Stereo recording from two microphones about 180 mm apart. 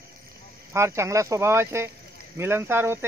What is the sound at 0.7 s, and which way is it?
Speech, 15° right (ahead or behind).